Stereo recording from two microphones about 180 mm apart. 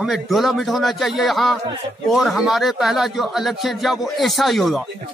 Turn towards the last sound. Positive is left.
turn(degrees=0)  # may be behind; listen again after turning